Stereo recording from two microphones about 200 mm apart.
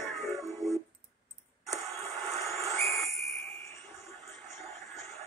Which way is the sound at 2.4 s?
15° left (ahead or behind).